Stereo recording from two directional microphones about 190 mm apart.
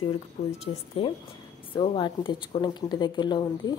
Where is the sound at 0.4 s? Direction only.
30° left (ahead or behind).